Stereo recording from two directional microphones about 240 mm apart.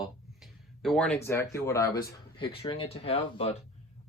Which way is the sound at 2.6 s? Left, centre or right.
Left.